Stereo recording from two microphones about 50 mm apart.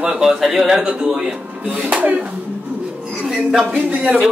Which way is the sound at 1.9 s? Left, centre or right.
Right.